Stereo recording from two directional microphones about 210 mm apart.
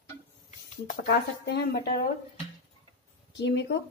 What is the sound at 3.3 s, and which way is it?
Speech, 55° left (ahead or behind).